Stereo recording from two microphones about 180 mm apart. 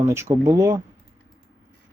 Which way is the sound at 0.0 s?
15° right (ahead or behind).